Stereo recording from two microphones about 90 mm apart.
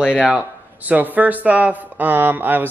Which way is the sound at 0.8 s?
20° right (ahead or behind).